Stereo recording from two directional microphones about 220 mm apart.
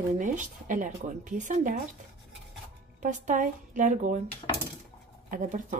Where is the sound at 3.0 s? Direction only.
35° right (ahead or behind).